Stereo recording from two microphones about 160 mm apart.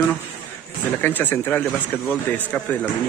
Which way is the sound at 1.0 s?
10° left (ahead or behind).